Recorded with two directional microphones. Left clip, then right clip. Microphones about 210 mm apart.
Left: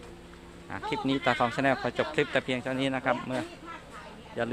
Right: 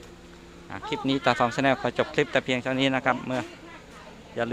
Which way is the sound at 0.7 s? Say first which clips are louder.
Right 2 dB; 10° right (ahead or behind).